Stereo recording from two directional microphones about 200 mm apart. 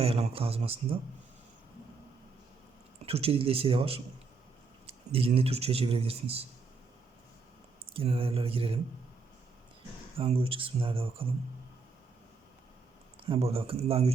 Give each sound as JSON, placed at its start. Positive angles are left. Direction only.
{"t": 0.0, "sound": "speech", "side_deg": -30}
{"t": 3.1, "sound": "speech", "side_deg": -30}
{"t": 5.1, "sound": "speech", "side_deg": -30}
{"t": 7.9, "sound": "speech", "side_deg": -25}
{"t": 10.2, "sound": "speech", "side_deg": -30}
{"t": 13.1, "sound": "speech", "side_deg": -25}